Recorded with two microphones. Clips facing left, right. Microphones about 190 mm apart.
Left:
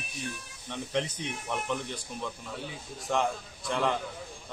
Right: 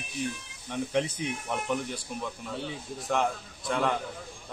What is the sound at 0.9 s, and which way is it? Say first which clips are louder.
Speech: right 2 dB; 10° right (ahead or behind).